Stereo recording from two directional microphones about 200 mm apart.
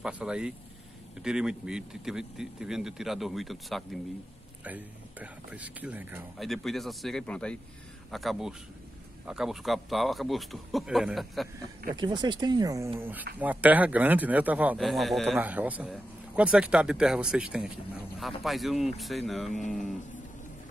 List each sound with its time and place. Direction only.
0.0 s a man's voice: 5° right (ahead or behind)
11.9 s a man's voice: 20° right (ahead or behind); by 19.5 s centre (ahead or behind)